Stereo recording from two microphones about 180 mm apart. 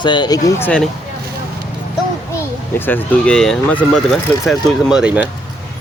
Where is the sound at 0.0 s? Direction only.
25° left (ahead or behind).